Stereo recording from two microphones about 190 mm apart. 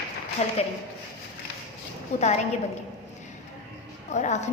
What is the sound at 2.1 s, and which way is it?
Speech, 35° left (ahead or behind).